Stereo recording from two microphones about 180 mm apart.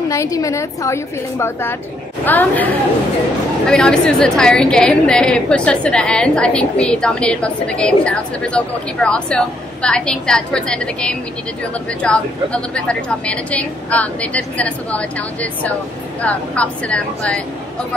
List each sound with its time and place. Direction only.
0.1 s a woman's voice: 15° left (ahead or behind)